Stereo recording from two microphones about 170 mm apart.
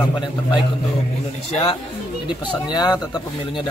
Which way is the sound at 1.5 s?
35° left (ahead or behind).